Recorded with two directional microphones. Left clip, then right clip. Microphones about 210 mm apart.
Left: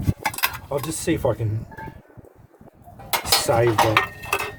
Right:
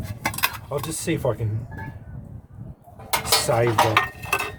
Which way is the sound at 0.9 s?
30° left (ahead or behind).